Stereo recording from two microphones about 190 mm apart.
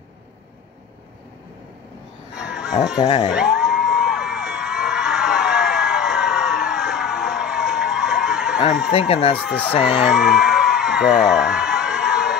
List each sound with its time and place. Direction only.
2.3 s a sound: 5° right (ahead or behind)
3.0 s speech: 25° left (ahead or behind)
3.3 s a sound: 5° right (ahead or behind)
8.9 s speech: 30° left (ahead or behind)
9.4 s speech: 5° left (ahead or behind)
9.8 s whoop: centre (ahead or behind)